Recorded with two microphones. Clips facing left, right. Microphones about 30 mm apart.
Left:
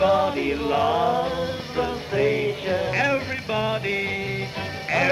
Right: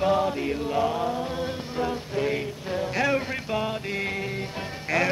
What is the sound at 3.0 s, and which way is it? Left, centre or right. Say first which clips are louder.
Speech: left 2 dB; centre.